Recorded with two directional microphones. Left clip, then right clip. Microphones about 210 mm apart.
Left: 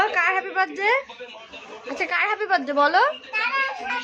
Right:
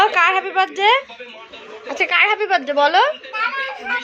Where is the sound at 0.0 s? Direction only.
Centre (ahead or behind).